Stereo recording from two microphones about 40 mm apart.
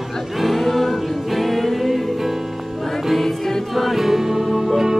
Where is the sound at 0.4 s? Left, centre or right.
Centre.